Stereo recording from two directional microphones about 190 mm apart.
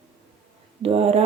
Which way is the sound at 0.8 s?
35° right (ahead or behind).